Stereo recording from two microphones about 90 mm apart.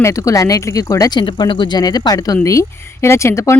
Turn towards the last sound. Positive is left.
turn(degrees=35)  # may be behind; listen again after turning